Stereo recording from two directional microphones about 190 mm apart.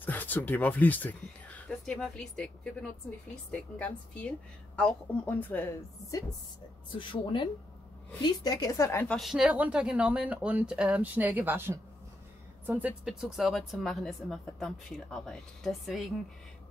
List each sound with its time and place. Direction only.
0.0 s a woman's voice: 10° left (ahead or behind)
7.0 s a woman's voice: 25° left (ahead or behind); by 16.1 s centre (ahead or behind)